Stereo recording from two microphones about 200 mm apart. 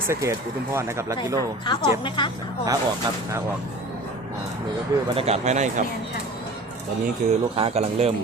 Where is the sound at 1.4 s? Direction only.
25° left (ahead or behind).